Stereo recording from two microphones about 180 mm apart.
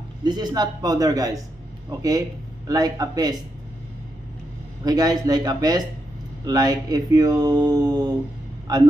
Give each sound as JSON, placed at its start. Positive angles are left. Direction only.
{"t": 0.2, "sound": "speech", "side_deg": -25}
{"t": 4.8, "sound": "speech", "side_deg": -20}